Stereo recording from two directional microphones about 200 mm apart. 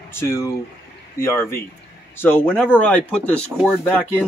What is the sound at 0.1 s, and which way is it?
Speech, 15° left (ahead or behind).